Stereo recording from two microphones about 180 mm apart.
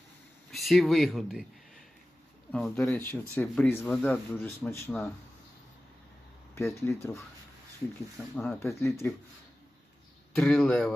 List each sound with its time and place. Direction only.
0.5 s speech: centre (ahead or behind)
2.5 s speech: 5° left (ahead or behind)
6.6 s speech: 15° left (ahead or behind)
8.4 s speech: 15° left (ahead or behind)
10.3 s speech: 5° left (ahead or behind)